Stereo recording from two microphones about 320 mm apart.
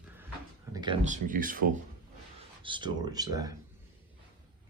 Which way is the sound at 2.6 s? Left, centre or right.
Centre.